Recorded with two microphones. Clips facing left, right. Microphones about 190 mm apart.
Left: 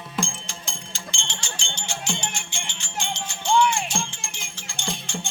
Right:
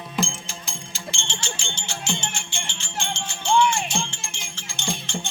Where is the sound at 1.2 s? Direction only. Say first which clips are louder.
Right 3 dB; 15° left (ahead or behind).